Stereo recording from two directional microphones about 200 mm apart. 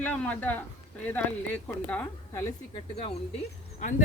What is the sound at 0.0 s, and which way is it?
Speech, 5° left (ahead or behind).